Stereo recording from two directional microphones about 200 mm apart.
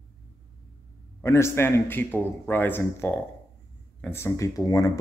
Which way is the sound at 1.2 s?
15° left (ahead or behind).